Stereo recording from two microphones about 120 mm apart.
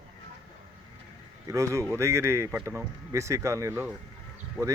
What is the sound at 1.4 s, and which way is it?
Speech, 25° right (ahead or behind).